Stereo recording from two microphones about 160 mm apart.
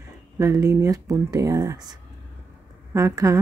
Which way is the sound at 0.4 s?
20° right (ahead or behind).